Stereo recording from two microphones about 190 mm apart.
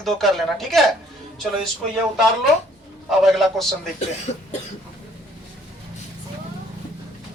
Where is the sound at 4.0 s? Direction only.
35° left (ahead or behind).